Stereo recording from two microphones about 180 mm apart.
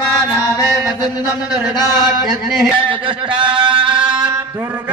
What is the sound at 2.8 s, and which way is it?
Speech, 30° right (ahead or behind).